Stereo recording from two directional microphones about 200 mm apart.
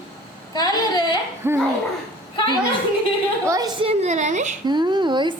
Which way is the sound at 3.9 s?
35° right (ahead or behind).